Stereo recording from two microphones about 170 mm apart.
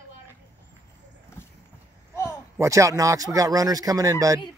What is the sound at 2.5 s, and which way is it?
A man's voice, 15° right (ahead or behind).